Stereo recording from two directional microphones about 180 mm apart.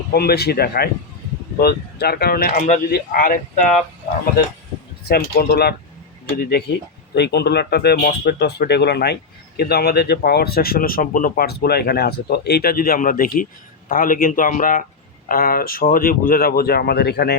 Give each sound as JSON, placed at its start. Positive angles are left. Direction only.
{"t": 0.1, "sound": "speech", "side_deg": 60}
{"t": 5.0, "sound": "speech", "side_deg": 60}